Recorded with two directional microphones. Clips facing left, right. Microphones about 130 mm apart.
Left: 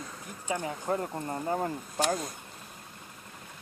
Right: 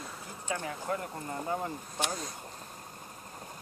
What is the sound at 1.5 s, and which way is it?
Speech, 45° left (ahead or behind).